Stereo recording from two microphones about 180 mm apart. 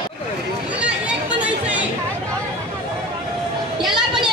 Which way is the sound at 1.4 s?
10° right (ahead or behind).